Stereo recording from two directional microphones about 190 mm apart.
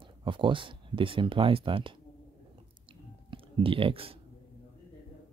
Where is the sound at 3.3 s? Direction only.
30° right (ahead or behind).